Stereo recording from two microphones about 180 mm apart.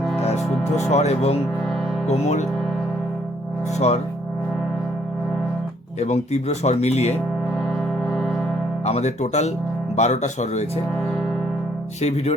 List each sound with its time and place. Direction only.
0.9 s speech: 35° left (ahead or behind)
3.8 s speech: 35° left (ahead or behind)
6.0 s speech: 35° left (ahead or behind)
8.8 s speech: 35° left (ahead or behind)
12.0 s speech: 35° left (ahead or behind)